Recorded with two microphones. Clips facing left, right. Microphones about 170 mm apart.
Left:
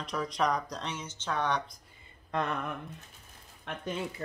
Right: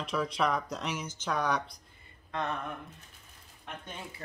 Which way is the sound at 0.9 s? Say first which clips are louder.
Right 3 dB; 25° left (ahead or behind).